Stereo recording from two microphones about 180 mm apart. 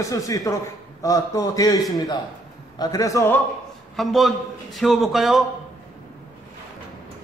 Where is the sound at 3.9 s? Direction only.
Centre (ahead or behind).